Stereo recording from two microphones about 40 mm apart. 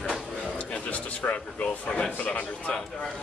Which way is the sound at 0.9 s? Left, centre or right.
Left.